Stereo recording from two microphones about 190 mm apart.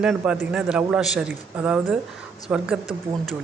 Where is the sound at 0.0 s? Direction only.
Centre (ahead or behind).